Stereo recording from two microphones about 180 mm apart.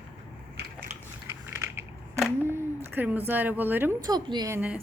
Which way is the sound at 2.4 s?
15° right (ahead or behind).